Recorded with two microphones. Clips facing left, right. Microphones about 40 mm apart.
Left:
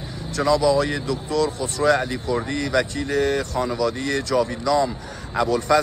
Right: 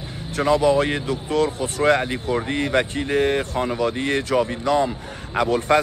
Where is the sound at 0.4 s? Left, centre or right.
Right.